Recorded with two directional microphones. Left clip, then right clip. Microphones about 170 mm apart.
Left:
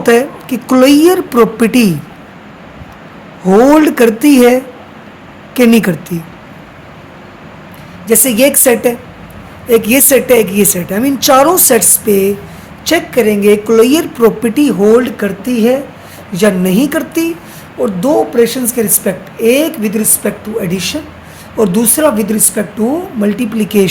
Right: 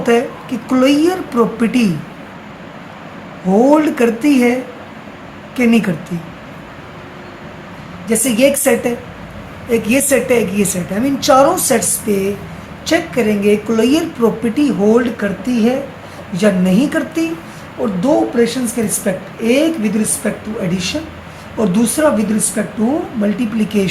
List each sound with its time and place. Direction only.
0.0 s a woman's voice: 60° left (ahead or behind)
3.4 s a woman's voice: 65° left (ahead or behind)
8.0 s a woman's voice: 60° left (ahead or behind)